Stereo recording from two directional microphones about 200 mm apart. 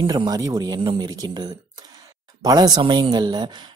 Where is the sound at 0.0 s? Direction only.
20° right (ahead or behind).